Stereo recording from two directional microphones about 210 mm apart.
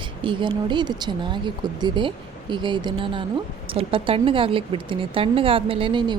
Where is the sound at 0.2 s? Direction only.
25° right (ahead or behind).